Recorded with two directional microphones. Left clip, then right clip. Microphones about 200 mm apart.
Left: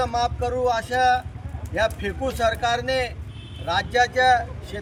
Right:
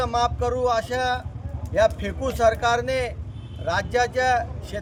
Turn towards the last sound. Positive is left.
turn(degrees=-25)  # may be behind; listen again after turning